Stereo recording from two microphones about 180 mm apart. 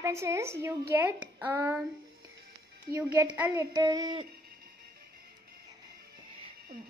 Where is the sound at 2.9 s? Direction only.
20° right (ahead or behind).